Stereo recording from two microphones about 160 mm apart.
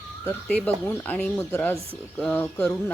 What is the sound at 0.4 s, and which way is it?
Speech, 10° left (ahead or behind).